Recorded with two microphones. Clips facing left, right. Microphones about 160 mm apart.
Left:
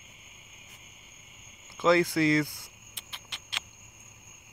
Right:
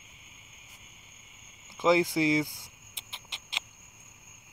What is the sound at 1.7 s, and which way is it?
Squeal, 15° right (ahead or behind).